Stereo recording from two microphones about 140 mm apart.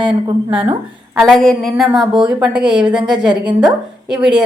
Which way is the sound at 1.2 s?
Centre (ahead or behind).